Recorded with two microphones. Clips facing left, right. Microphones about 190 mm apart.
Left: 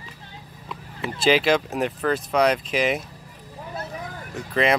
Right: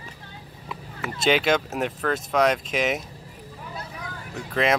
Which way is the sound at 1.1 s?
Centre (ahead or behind).